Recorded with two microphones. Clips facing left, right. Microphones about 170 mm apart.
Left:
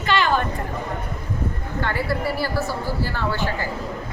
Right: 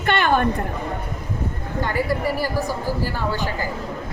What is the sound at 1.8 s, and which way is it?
Speech, 15° right (ahead or behind).